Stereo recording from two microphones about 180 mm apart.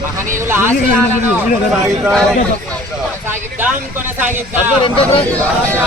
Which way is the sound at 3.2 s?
10° right (ahead or behind).